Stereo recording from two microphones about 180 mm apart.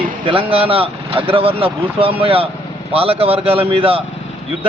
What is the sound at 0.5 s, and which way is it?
A man's voice, 30° right (ahead or behind).